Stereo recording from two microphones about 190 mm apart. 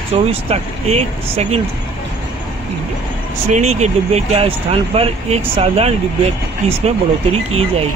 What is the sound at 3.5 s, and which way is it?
Speech, 35° right (ahead or behind).